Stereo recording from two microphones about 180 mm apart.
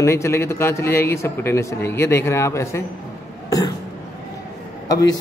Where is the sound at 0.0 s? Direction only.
15° left (ahead or behind).